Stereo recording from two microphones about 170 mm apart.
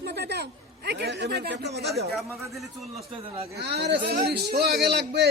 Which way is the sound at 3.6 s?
75° right (ahead or behind).